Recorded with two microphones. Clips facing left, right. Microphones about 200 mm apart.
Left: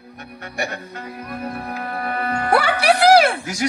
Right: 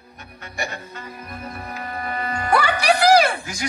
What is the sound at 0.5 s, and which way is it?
Music, 65° left (ahead or behind).